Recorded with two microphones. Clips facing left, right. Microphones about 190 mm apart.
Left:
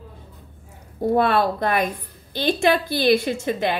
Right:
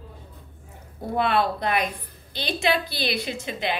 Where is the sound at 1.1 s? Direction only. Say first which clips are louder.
Left 3 dB; 45° left (ahead or behind).